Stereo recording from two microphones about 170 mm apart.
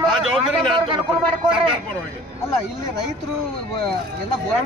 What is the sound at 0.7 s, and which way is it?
Speech, 25° right (ahead or behind).